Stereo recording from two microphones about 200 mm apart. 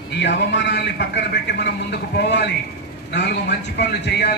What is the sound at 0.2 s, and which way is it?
A man's voice, 60° left (ahead or behind).